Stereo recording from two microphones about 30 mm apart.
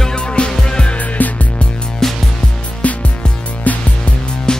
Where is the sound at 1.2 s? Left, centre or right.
Left.